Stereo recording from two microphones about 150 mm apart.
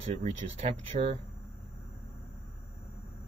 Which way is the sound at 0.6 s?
45° right (ahead or behind).